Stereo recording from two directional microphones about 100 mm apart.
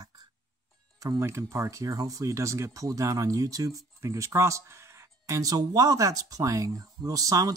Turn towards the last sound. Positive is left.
turn(degrees=-35)  # may be behind; listen again after turning